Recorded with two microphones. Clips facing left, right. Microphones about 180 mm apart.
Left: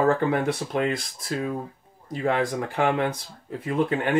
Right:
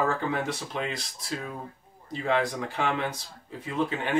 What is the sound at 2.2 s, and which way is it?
Speech, 50° left (ahead or behind).